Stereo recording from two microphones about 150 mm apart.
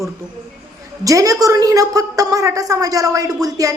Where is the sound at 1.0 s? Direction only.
20° right (ahead or behind).